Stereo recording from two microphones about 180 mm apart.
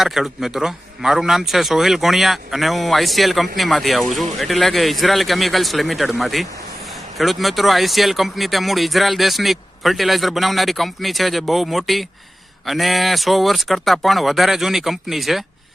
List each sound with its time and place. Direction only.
0.0 s speech: centre (ahead or behind)